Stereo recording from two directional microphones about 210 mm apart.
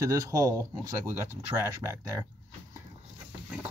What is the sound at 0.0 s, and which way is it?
Speech, 15° right (ahead or behind).